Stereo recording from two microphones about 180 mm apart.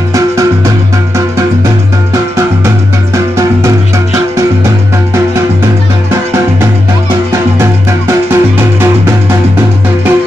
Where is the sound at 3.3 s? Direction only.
15° right (ahead or behind).